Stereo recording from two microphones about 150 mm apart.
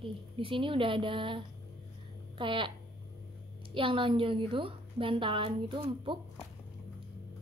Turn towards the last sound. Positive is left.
turn(degrees=-35)  # may be behind; listen again after turning